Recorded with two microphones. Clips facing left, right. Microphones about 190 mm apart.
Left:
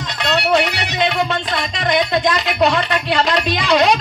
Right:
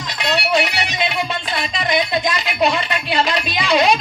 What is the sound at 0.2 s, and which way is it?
Music, 10° right (ahead or behind).